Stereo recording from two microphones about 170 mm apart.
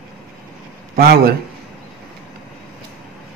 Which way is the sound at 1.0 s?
65° right (ahead or behind).